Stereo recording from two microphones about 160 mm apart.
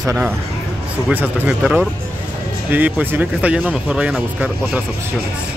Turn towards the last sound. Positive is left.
turn(degrees=-5)  # may be behind; listen again after turning